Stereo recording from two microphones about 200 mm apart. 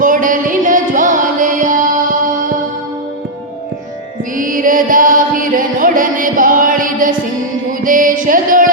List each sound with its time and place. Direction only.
0.0 s music: 40° right (ahead or behind)
4.4 s chant: 40° right (ahead or behind)
7.9 s music: 45° right (ahead or behind)